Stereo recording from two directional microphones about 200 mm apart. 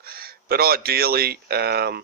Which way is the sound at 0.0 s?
50° right (ahead or behind).